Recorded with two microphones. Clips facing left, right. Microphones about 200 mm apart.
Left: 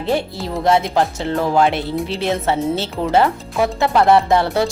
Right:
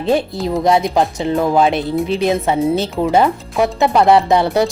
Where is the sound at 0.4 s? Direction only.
15° right (ahead or behind).